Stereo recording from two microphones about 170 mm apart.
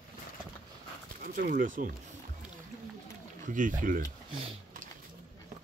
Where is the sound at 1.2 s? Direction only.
55° right (ahead or behind).